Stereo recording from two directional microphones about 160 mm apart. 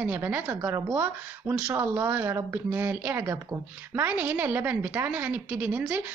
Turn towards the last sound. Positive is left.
turn(degrees=-10)  # may be behind; listen again after turning